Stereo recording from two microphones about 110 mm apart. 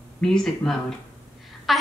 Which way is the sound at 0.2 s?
5° left (ahead or behind).